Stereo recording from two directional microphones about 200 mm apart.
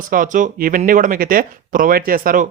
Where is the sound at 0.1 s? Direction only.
40° right (ahead or behind).